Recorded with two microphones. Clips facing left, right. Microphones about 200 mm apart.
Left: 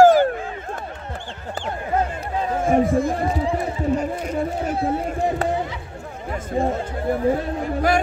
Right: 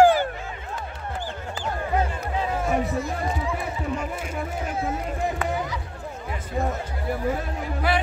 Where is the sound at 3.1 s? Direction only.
30° left (ahead or behind).